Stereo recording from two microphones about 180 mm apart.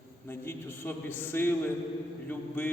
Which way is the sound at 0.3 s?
15° left (ahead or behind).